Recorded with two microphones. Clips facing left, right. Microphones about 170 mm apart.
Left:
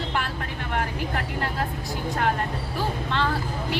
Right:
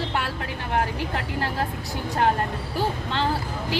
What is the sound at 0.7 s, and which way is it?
Vehicle, 30° right (ahead or behind).